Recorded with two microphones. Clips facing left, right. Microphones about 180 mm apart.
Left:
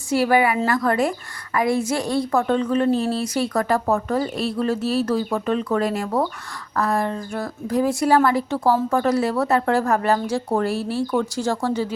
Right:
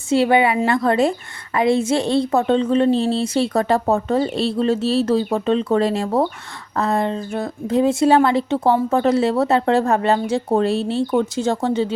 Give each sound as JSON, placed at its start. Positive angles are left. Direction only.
{"t": 0.1, "sound": "speech", "side_deg": -25}